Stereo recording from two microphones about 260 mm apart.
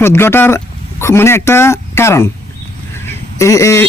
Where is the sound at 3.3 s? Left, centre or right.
Centre.